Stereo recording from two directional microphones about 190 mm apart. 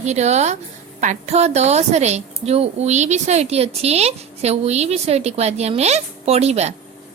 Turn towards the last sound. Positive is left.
turn(degrees=-35)  # may be behind; listen again after turning